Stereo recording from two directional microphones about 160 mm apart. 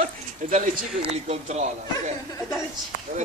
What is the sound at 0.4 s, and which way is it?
Speech, 40° right (ahead or behind).